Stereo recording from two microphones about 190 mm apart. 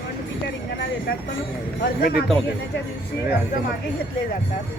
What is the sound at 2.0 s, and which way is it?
Speech, 55° left (ahead or behind).